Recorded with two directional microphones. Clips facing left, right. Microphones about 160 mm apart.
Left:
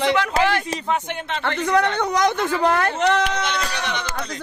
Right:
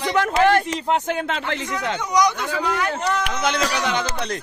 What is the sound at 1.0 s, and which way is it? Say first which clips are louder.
Speech: right 4 dB; 90° right.